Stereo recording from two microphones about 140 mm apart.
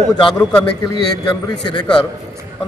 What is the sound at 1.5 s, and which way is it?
Speech, 30° left (ahead or behind).